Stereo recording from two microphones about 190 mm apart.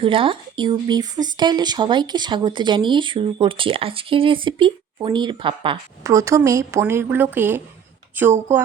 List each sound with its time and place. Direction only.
0.0 s a woman's voice: 25° right (ahead or behind); by 8.6 s 10° right (ahead or behind)